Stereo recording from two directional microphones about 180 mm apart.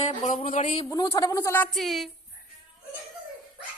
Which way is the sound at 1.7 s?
Centre (ahead or behind).